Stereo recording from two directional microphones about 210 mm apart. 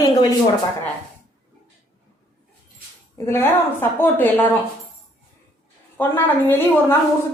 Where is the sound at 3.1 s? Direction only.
10° left (ahead or behind).